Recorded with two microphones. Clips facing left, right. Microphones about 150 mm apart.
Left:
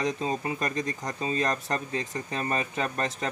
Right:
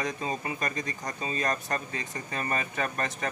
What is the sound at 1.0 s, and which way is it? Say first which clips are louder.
Speech: left 1 dB; 30° left (ahead or behind).